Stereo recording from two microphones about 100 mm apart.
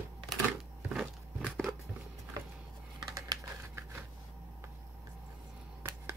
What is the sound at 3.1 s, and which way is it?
Typing, 35° right (ahead or behind).